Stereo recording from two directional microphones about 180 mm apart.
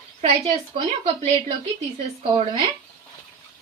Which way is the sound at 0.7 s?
35° right (ahead or behind).